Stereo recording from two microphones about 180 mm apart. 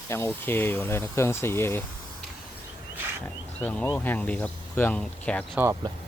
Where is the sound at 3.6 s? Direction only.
5° left (ahead or behind).